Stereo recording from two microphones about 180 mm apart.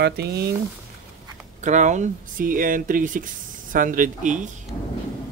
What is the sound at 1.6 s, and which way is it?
Speech, 40° right (ahead or behind).